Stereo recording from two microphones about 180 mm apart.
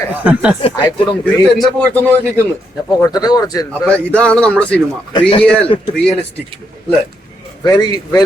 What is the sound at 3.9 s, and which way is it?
Speech, 5° left (ahead or behind).